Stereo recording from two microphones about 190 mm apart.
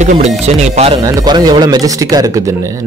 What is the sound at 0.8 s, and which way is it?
A man's voice, 25° right (ahead or behind).